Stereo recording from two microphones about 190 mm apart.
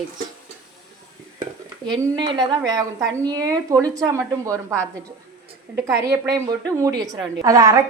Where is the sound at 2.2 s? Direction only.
25° right (ahead or behind).